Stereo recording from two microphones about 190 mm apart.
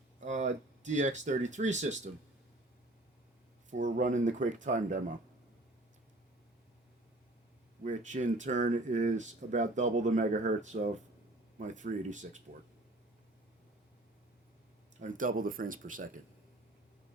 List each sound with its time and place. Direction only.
0.2 s speech: 40° right (ahead or behind)
3.7 s speech: 40° right (ahead or behind)
7.9 s speech: 40° right (ahead or behind)
15.0 s speech: 45° right (ahead or behind)